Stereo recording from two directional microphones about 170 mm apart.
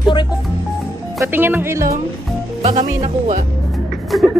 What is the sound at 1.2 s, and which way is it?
Speech, 10° right (ahead or behind).